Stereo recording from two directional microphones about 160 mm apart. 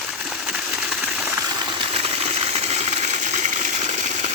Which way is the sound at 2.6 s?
45° right (ahead or behind).